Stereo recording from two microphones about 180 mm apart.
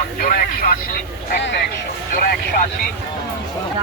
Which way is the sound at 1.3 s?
75° left (ahead or behind).